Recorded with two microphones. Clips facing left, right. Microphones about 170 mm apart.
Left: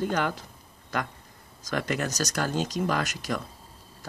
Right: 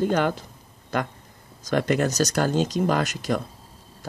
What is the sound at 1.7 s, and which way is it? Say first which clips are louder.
Speech: right 7 dB; 30° right (ahead or behind).